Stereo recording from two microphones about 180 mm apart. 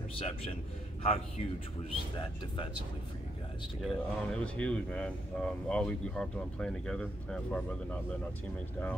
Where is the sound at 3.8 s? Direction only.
Centre (ahead or behind).